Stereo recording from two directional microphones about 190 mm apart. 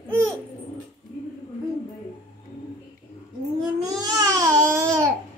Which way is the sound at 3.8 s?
20° right (ahead or behind).